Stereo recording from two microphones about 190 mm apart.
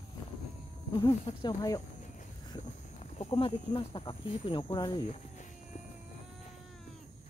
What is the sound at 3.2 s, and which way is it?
Speech, 30° left (ahead or behind).